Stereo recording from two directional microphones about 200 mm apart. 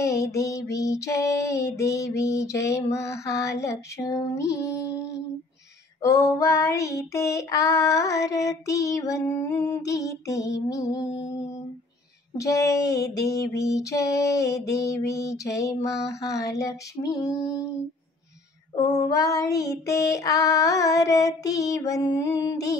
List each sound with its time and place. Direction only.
0.0 s female singing: 15° left (ahead or behind)
6.0 s female singing: 15° left (ahead or behind)
12.4 s female singing: 15° left (ahead or behind)
18.8 s female singing: 15° left (ahead or behind)